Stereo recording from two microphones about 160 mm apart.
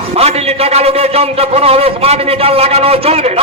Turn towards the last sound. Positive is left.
turn(degrees=-40)  # may be behind; listen again after turning